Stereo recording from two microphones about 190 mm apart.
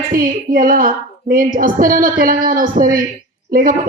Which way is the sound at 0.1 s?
45° right (ahead or behind).